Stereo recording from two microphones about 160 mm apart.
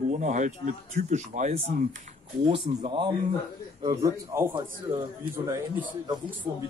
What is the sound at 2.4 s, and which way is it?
Speech, 30° right (ahead or behind).